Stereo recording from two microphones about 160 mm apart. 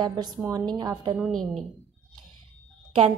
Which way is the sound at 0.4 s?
25° right (ahead or behind).